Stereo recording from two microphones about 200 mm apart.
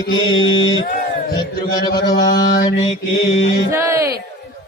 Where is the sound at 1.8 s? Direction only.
20° left (ahead or behind).